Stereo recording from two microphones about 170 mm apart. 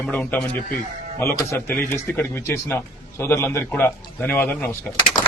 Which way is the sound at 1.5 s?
10° left (ahead or behind).